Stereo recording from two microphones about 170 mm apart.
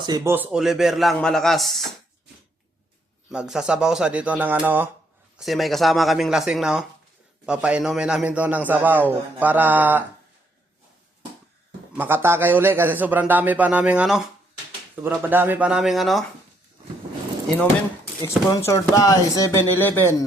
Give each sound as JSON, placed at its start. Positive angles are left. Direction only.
{"t": 0.3, "sound": "speech", "side_deg": -10}
{"t": 3.3, "sound": "a man's voice", "side_deg": -5}
{"t": 5.4, "sound": "a man's voice", "side_deg": 0}
{"t": 11.9, "sound": "a man's voice", "side_deg": -10}
{"t": 18.2, "sound": "speech", "side_deg": 20}